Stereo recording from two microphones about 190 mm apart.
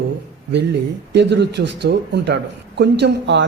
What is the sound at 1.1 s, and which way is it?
A man's voice, 65° right (ahead or behind).